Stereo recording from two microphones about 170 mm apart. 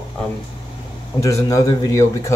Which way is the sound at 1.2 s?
20° left (ahead or behind).